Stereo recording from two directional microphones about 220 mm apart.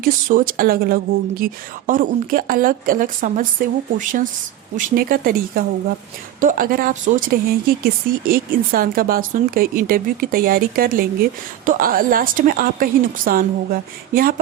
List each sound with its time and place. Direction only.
0.0 s speech: 40° right (ahead or behind)